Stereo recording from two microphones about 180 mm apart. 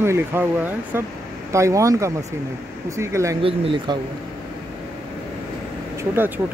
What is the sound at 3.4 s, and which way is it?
Speech, 30° right (ahead or behind).